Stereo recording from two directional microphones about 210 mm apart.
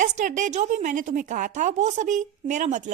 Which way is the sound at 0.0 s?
35° right (ahead or behind).